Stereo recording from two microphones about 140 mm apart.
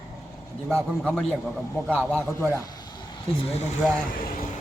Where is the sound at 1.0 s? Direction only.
5° left (ahead or behind).